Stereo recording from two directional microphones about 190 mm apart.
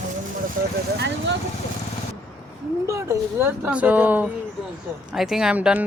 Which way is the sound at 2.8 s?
15° right (ahead or behind).